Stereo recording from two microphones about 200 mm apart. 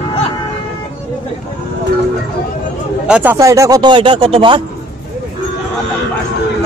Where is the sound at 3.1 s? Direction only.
5° right (ahead or behind); by 4.6 s 25° right (ahead or behind).